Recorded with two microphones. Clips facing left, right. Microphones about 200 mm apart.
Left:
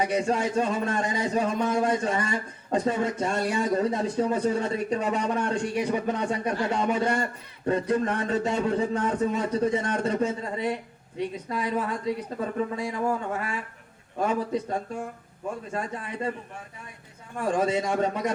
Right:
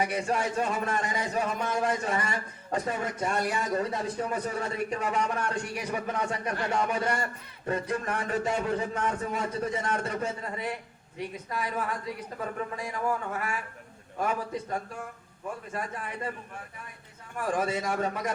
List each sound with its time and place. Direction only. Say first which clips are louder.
0.0 s speech: left 4 dB; 25° left (ahead or behind)
17.3 s speech: left 4 dB; 25° left (ahead or behind)